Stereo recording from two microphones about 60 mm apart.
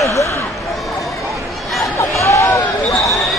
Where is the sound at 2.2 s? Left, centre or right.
Left.